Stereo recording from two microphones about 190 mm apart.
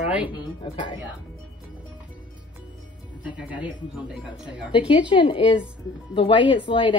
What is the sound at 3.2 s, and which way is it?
Speech, 5° right (ahead or behind).